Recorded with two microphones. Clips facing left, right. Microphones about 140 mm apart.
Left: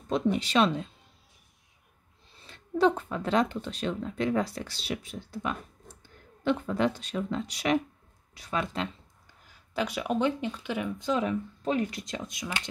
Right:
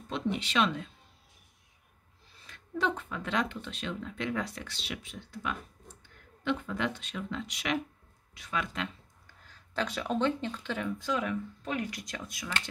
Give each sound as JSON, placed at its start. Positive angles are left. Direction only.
{"t": 0.1, "sound": "speech", "side_deg": 40}
{"t": 2.4, "sound": "speech", "side_deg": 30}
{"t": 9.5, "sound": "speech", "side_deg": 10}
{"t": 11.1, "sound": "speech", "side_deg": 25}